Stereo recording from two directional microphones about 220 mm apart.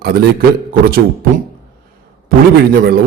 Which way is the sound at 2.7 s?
45° right (ahead or behind).